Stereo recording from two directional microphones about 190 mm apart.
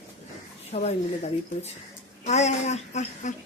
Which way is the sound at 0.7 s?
35° left (ahead or behind).